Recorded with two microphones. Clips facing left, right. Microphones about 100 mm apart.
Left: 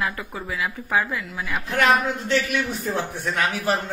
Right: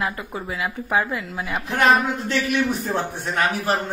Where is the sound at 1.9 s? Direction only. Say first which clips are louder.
Even; 35° right (ahead or behind).